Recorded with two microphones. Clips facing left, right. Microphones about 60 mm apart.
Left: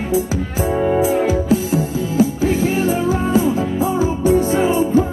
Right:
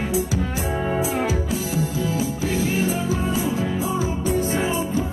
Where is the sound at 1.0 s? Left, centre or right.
Left.